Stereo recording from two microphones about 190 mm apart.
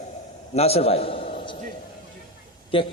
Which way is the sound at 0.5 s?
35° left (ahead or behind).